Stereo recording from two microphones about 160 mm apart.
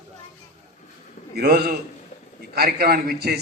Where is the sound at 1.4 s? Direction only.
90° right.